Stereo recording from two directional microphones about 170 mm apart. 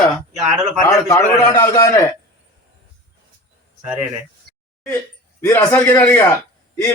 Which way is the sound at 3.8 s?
10° right (ahead or behind).